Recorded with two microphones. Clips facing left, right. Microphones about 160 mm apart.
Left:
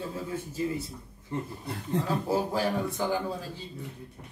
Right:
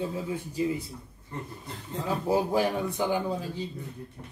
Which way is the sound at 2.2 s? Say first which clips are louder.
Right 3 dB; 15° right (ahead or behind).